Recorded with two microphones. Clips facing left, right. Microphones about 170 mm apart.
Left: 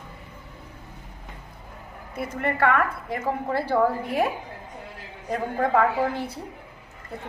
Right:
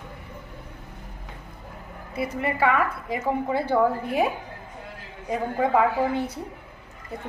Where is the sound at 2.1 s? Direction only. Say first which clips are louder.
Right 1 dB; 5° right (ahead or behind).